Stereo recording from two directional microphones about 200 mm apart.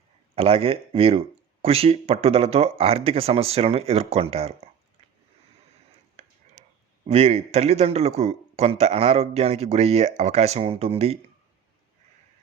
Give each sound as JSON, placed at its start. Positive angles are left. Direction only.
{"t": 0.3, "sound": "speech", "side_deg": -30}
{"t": 7.1, "sound": "a man's voice", "side_deg": -30}